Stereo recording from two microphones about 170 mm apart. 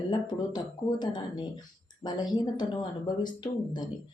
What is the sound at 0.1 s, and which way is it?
Speech, 25° left (ahead or behind).